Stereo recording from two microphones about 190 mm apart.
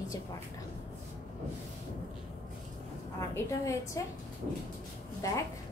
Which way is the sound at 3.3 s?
15° left (ahead or behind).